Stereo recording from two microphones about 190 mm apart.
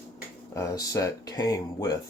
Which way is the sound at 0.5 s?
15° left (ahead or behind).